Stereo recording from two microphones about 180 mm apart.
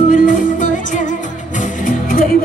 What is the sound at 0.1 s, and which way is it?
Music, 45° left (ahead or behind).